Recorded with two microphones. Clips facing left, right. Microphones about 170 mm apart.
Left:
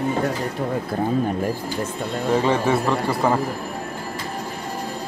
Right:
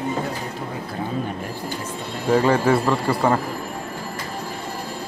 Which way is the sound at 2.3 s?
Centre (ahead or behind).